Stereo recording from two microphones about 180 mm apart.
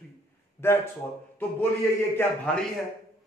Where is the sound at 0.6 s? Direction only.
15° left (ahead or behind).